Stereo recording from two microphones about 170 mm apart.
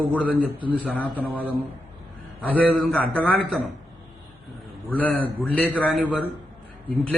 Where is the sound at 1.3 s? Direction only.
10° right (ahead or behind).